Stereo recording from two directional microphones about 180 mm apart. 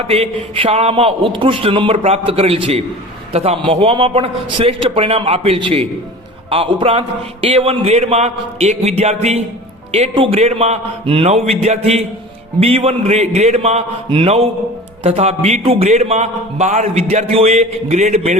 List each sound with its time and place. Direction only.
0.1 s speech: 30° right (ahead or behind)